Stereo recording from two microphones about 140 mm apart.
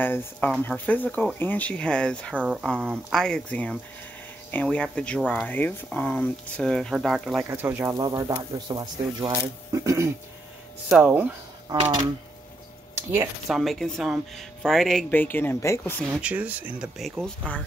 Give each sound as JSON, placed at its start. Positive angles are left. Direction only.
{"t": 0.0, "sound": "speech", "side_deg": 15}
{"t": 2.3, "sound": "speech", "side_deg": -5}
{"t": 3.1, "sound": "speech", "side_deg": 5}
{"t": 7.4, "sound": "speech", "side_deg": -15}
{"t": 8.0, "sound": "speech", "side_deg": -25}
{"t": 10.9, "sound": "speech", "side_deg": -10}
{"t": 13.5, "sound": "speech", "side_deg": 0}
{"t": 16.1, "sound": "speech", "side_deg": -10}
{"t": 17.4, "sound": "speech", "side_deg": 10}